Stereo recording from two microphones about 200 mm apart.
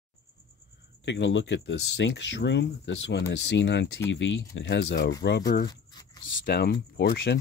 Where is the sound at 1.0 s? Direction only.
65° left (ahead or behind).